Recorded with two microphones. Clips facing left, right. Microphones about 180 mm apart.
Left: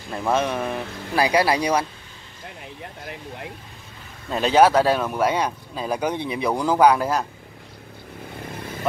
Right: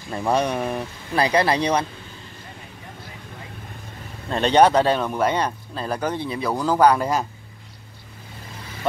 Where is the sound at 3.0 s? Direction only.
75° left (ahead or behind).